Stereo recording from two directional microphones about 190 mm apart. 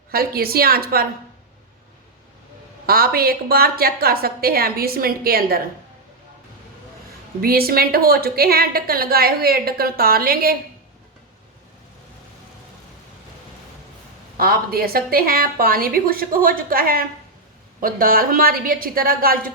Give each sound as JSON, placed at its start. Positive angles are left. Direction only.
{"t": 0.1, "sound": "a woman's voice", "side_deg": -55}
{"t": 2.8, "sound": "a woman's voice", "side_deg": -50}
{"t": 7.4, "sound": "a woman's voice", "side_deg": -55}
{"t": 14.3, "sound": "a woman's voice", "side_deg": -50}